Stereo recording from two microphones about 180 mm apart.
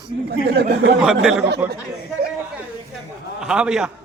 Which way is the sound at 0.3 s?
65° right (ahead or behind).